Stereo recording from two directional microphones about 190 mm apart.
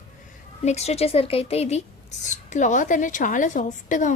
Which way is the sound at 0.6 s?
35° left (ahead or behind).